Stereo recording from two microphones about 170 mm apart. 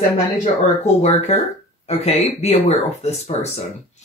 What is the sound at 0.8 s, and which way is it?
Speech, 40° left (ahead or behind).